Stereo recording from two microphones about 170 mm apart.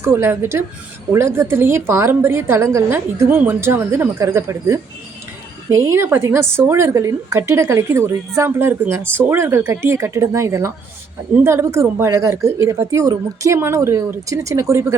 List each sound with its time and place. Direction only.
0.0 s a woman's voice: 15° right (ahead or behind)